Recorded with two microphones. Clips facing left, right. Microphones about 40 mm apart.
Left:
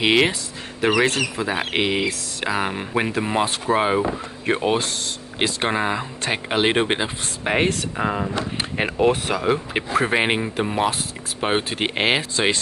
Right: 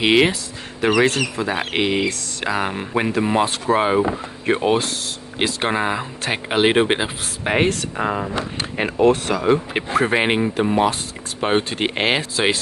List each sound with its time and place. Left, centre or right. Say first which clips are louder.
0.0 s speech: right 2 dB; centre
8.7 s speech: right 3 dB; centre